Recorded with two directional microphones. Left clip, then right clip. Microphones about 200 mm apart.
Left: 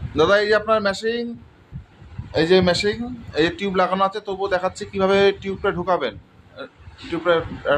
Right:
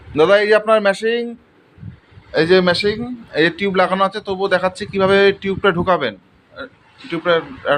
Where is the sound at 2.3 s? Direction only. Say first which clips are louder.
Right 3 dB; 10° right (ahead or behind).